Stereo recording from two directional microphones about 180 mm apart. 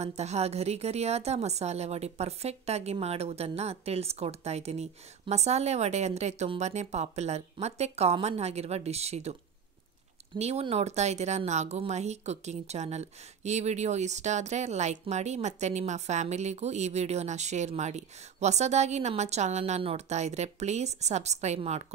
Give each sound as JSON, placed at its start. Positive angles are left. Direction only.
{"t": 0.0, "sound": "speech", "side_deg": -40}
{"t": 10.4, "sound": "speech", "side_deg": -35}